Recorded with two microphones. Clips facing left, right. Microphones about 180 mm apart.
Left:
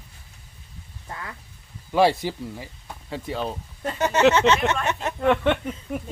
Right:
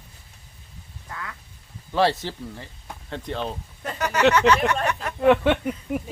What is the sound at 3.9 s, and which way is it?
Speech, 25° left (ahead or behind).